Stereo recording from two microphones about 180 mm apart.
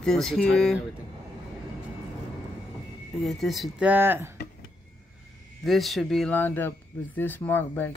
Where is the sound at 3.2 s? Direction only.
Centre (ahead or behind).